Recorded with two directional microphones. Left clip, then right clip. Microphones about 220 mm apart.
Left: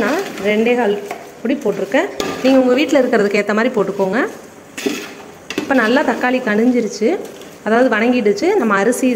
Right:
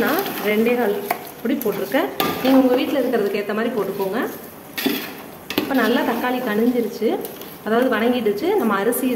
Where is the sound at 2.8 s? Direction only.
40° left (ahead or behind).